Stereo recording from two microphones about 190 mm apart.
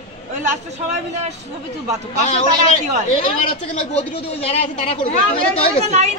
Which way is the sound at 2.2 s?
35° left (ahead or behind).